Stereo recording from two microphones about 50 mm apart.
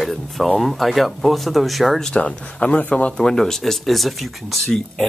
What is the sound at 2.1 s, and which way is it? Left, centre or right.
Speech, left.